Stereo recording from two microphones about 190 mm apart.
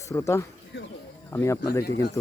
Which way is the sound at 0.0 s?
15° left (ahead or behind).